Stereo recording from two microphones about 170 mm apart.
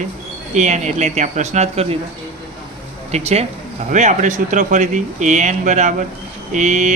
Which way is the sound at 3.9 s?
45° right (ahead or behind).